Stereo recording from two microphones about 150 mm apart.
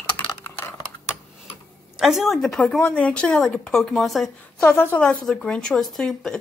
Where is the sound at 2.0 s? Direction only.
Centre (ahead or behind).